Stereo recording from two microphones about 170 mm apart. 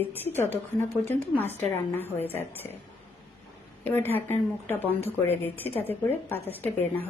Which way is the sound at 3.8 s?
10° left (ahead or behind).